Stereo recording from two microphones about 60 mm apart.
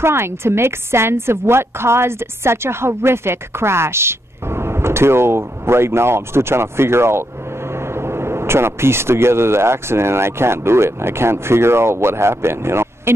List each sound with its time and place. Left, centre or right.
0.0 s a woman's voice: right